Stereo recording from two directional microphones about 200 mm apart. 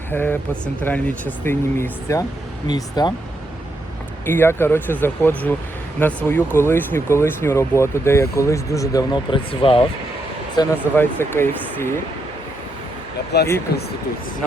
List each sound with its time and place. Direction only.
0.1 s speech: 10° left (ahead or behind)
4.3 s speech: 10° left (ahead or behind)
13.3 s speech: 55° left (ahead or behind)